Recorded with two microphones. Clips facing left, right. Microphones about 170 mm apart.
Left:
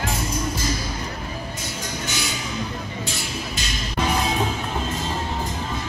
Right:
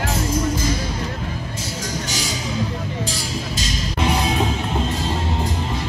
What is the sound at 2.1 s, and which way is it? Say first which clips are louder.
Music: right 2 dB; 35° right (ahead or behind).